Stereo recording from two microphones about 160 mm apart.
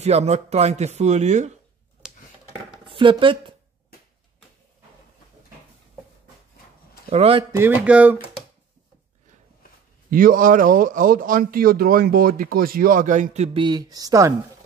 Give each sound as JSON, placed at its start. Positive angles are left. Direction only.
{"t": 0.0, "sound": "speech", "side_deg": -40}
{"t": 2.0, "sound": "a sound", "side_deg": -5}
{"t": 2.9, "sound": "speech", "side_deg": -30}
{"t": 7.1, "sound": "a man's voice", "side_deg": -40}
{"t": 7.5, "sound": "speech", "side_deg": -10}
{"t": 10.1, "sound": "speech", "side_deg": -60}
{"t": 13.6, "sound": "speech", "side_deg": -25}